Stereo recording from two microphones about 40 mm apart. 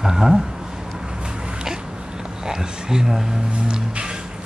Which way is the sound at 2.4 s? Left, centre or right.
Centre.